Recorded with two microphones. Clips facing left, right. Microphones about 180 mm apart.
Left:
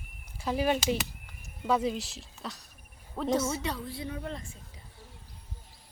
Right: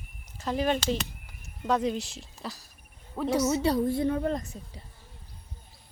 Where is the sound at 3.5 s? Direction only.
35° right (ahead or behind).